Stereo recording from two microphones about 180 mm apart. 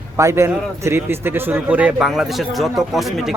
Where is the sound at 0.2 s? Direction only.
15° right (ahead or behind).